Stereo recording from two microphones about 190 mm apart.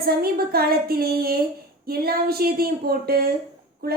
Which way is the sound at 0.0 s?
55° right (ahead or behind).